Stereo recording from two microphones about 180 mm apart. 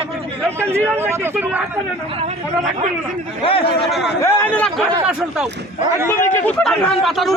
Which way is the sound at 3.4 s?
30° left (ahead or behind).